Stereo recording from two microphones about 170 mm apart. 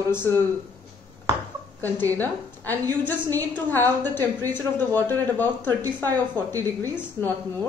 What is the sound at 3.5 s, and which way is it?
A woman's voice, 10° left (ahead or behind).